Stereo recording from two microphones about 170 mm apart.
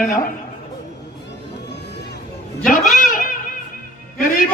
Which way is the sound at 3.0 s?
55° left (ahead or behind).